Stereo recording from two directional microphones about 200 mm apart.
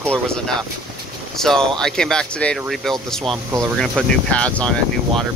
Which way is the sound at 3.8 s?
5° left (ahead or behind).